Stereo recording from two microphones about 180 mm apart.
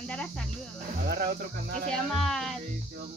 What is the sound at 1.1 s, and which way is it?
Music, 55° right (ahead or behind).